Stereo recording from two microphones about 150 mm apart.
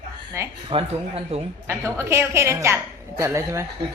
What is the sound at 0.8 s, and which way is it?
Speech, 50° right (ahead or behind).